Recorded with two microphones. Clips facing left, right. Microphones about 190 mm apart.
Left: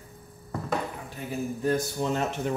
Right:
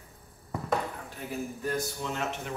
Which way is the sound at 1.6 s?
35° left (ahead or behind).